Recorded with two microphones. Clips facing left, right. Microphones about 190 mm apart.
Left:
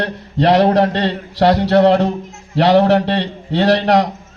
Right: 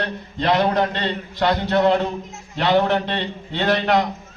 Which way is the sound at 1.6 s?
80° left.